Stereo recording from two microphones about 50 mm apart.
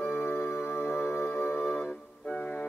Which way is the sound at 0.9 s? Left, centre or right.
Left.